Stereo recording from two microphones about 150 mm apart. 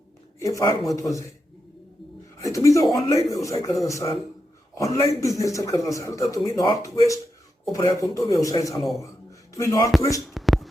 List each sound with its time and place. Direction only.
0.3 s a man's voice: 20° left (ahead or behind)
2.4 s a man's voice: 20° left (ahead or behind)
10.2 s a sound: centre (ahead or behind)